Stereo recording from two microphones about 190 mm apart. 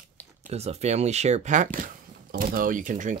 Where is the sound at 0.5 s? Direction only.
35° right (ahead or behind).